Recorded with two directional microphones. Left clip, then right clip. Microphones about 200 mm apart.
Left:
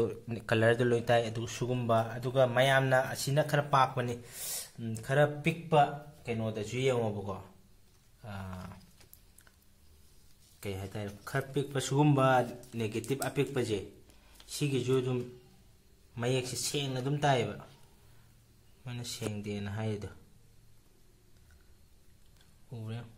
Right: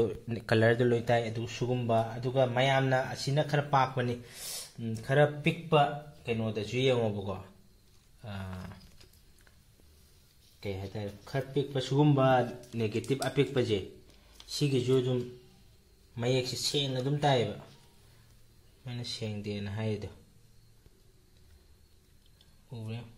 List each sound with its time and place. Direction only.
0.0 s speech: 5° right (ahead or behind)
10.6 s speech: centre (ahead or behind)
16.2 s speech: 5° right (ahead or behind)
18.9 s speech: centre (ahead or behind)
22.7 s speech: 10° left (ahead or behind)